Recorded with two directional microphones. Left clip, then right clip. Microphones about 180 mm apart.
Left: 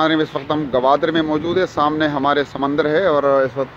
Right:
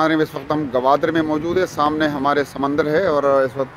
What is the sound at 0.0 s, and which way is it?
Speech, 5° right (ahead or behind).